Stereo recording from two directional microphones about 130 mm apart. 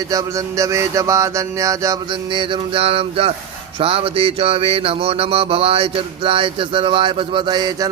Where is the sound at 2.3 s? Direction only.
40° right (ahead or behind).